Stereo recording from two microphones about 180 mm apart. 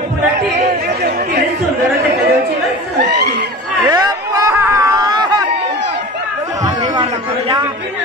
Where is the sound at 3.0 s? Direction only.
70° right (ahead or behind).